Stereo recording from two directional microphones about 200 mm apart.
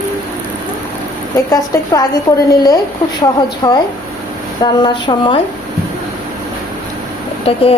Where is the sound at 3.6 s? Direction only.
20° left (ahead or behind).